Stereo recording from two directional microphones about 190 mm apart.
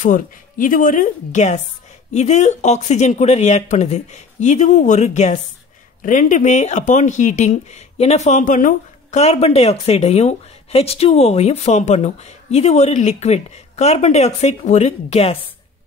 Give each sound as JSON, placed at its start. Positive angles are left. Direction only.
{"t": 0.0, "sound": "a woman's voice", "side_deg": 45}